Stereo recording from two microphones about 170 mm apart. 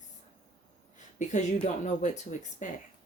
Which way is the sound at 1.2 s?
45° left (ahead or behind).